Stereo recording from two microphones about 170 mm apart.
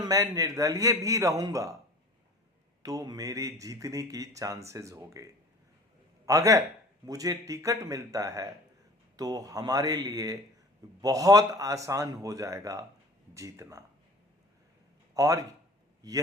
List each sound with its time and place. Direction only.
0.0 s speech: 20° right (ahead or behind)
2.8 s speech: 20° right (ahead or behind)
15.1 s a man's voice: 20° right (ahead or behind)